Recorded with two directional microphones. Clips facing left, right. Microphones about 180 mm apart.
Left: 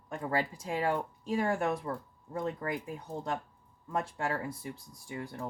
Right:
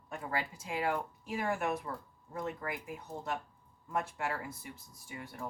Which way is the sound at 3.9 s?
30° left (ahead or behind).